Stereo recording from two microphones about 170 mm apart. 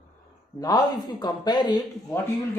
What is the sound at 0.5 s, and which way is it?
Speech, 20° left (ahead or behind).